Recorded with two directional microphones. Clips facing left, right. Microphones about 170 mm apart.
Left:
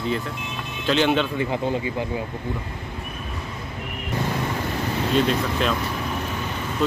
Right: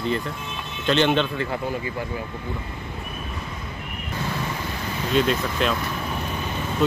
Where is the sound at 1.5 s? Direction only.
20° left (ahead or behind).